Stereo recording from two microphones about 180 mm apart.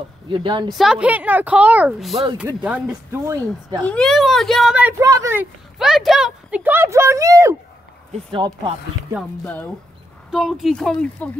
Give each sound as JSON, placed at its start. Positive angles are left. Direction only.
{"t": 0.3, "sound": "speech", "side_deg": -25}
{"t": 0.7, "sound": "speech", "side_deg": -5}
{"t": 3.8, "sound": "speech", "side_deg": 5}
{"t": 5.8, "sound": "speech", "side_deg": 0}
{"t": 9.4, "sound": "speech", "side_deg": 10}
{"t": 10.3, "sound": "speech", "side_deg": 0}